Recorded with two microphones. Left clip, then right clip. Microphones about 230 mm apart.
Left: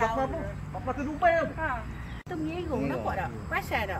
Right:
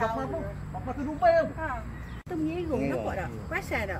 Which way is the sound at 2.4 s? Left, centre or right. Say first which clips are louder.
Right 2 dB; right.